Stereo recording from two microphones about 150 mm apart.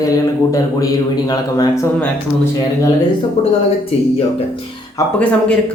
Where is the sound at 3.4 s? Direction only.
45° left (ahead or behind).